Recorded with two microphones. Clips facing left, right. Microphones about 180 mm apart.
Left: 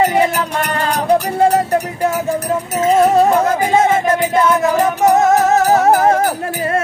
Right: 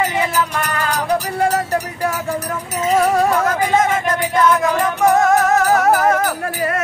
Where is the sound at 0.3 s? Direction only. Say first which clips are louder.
Left 1 dB; 60° left (ahead or behind).